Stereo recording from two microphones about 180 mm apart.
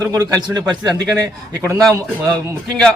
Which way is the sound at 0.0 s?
20° right (ahead or behind).